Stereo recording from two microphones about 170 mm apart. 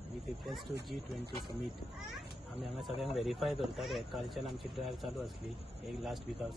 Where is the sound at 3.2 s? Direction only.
Centre (ahead or behind).